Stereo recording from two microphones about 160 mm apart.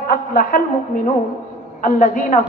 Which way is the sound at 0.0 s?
65° left (ahead or behind).